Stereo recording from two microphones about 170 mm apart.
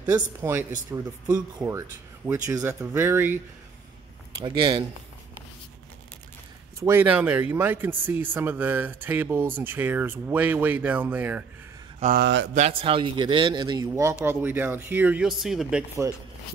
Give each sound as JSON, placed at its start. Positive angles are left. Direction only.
{"t": 0.0, "sound": "speech", "side_deg": -10}
{"t": 4.4, "sound": "a man's voice", "side_deg": -25}
{"t": 6.8, "sound": "speech", "side_deg": -15}
{"t": 12.2, "sound": "speech", "side_deg": -90}
{"t": 12.5, "sound": "a man's voice", "side_deg": -35}
{"t": 16.0, "sound": "speech", "side_deg": -20}